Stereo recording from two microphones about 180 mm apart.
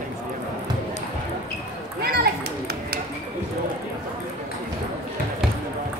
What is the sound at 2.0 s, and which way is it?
Children playing, 55° right (ahead or behind).